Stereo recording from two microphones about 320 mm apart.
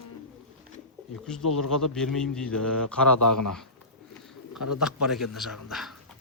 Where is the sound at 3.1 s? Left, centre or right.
Left.